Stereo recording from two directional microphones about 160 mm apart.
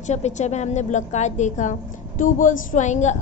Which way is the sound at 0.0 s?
45° left (ahead or behind).